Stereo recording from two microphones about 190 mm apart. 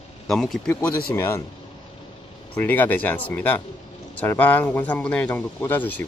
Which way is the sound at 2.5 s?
10° left (ahead or behind).